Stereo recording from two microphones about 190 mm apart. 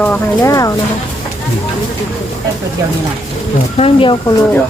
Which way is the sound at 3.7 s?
30° left (ahead or behind).